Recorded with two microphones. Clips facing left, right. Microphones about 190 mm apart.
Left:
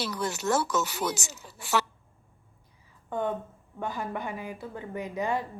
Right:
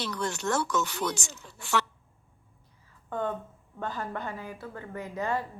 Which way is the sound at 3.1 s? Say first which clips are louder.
Left 2 dB; 15° left (ahead or behind).